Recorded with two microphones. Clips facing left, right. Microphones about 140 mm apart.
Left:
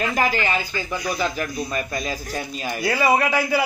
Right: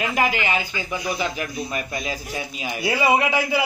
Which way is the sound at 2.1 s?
10° right (ahead or behind).